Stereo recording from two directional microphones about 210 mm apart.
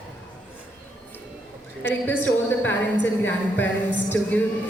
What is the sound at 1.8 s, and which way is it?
Speech, 10° left (ahead or behind).